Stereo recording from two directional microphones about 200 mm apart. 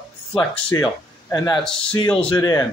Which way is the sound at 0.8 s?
20° left (ahead or behind).